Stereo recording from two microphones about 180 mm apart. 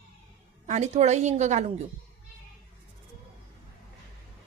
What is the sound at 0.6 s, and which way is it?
Speech, 40° right (ahead or behind).